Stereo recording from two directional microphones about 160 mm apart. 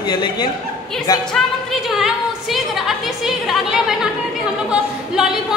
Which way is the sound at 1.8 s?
Centre (ahead or behind).